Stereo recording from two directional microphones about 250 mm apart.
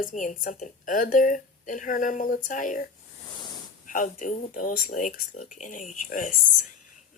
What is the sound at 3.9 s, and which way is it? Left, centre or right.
A woman's voice, left.